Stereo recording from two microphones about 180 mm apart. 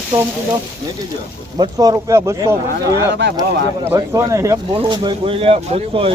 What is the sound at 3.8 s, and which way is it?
Speech, 20° right (ahead or behind).